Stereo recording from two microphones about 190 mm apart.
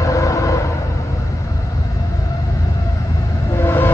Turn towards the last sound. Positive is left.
turn(degrees=15)  # may be behind; listen again after turning